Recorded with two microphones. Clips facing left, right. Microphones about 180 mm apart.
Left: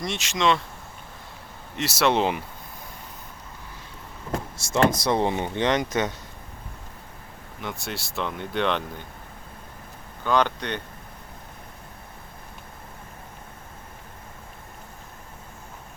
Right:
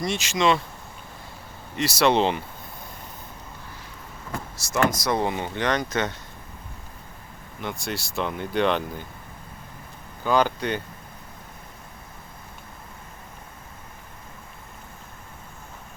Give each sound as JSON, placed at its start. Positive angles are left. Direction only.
{"t": 0.0, "sound": "speech", "side_deg": 0}
{"t": 1.7, "sound": "speech", "side_deg": 0}
{"t": 4.7, "sound": "speech", "side_deg": 30}
{"t": 7.6, "sound": "speech", "side_deg": 0}
{"t": 10.2, "sound": "speech", "side_deg": -5}